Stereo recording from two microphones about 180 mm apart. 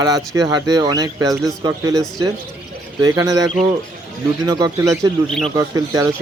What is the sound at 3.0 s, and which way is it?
Speech, 20° right (ahead or behind).